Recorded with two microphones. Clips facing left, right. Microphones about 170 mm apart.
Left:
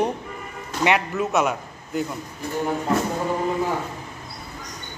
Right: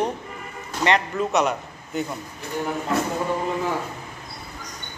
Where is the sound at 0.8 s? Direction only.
5° left (ahead or behind).